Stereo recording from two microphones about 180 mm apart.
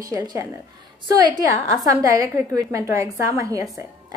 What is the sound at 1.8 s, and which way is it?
A woman's voice, 20° right (ahead or behind).